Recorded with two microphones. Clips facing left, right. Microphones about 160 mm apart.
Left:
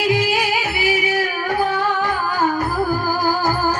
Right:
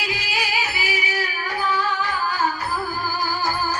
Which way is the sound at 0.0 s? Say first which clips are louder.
Left 10 dB; 55° left (ahead or behind).